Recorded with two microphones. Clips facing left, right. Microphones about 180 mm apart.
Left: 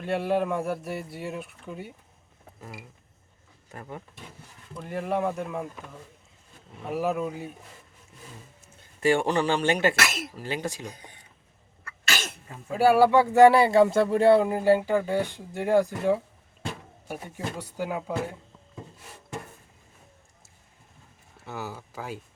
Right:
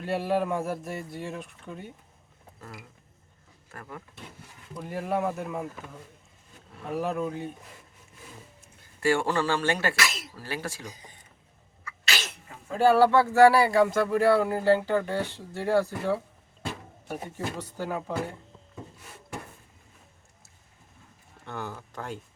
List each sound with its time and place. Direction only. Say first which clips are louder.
0.0 s speech: left 1 dB; centre (ahead or behind)
3.7 s speech: left 3 dB; 20° left (ahead or behind)
4.7 s speech: left 1 dB; centre (ahead or behind)
9.0 s speech: left 2 dB; 20° left (ahead or behind)
11.9 s sneeze: left 2 dB; 50° left (ahead or behind)
12.6 s speech: left 1 dB; 10° left (ahead or behind)
21.4 s speech: left 1 dB; 5° left (ahead or behind)